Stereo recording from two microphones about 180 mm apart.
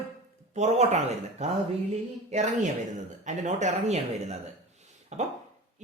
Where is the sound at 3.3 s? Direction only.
40° right (ahead or behind).